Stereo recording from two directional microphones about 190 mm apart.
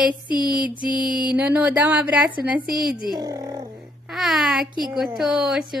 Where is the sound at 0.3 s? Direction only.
25° left (ahead or behind).